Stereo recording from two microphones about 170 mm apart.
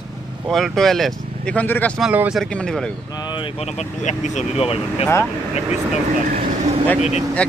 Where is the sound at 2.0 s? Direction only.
5° right (ahead or behind).